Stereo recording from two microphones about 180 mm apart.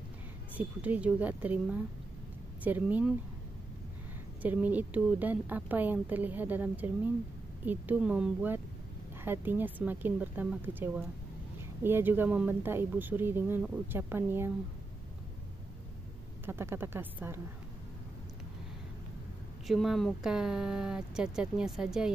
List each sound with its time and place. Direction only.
0.6 s speech: 10° right (ahead or behind)
4.4 s speech: 10° right (ahead or behind)
16.4 s speech: 15° right (ahead or behind)
19.7 s speech: centre (ahead or behind)